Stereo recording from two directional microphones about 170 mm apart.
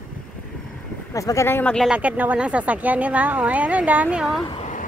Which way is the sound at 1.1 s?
20° left (ahead or behind).